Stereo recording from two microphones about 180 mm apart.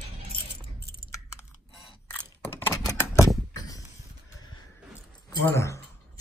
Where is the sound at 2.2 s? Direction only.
10° left (ahead or behind).